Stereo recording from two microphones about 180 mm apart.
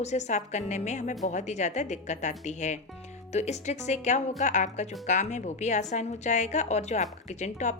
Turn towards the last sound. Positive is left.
turn(degrees=40)  # may be behind; listen again after turning